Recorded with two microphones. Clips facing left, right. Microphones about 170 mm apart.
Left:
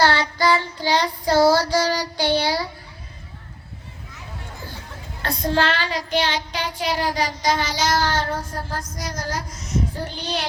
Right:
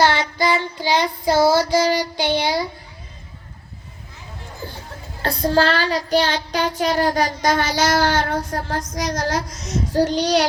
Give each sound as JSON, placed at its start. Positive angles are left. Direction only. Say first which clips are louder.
{"t": 0.3, "sound": "child singing", "louder": "even", "side_deg": -15}
{"t": 1.2, "sound": "a child's voice", "louder": "even", "side_deg": -10}
{"t": 5.2, "sound": "child singing", "louder": "right 4 dB", "side_deg": -30}
{"t": 9.0, "sound": "child singing", "louder": "right 8 dB", "side_deg": -90}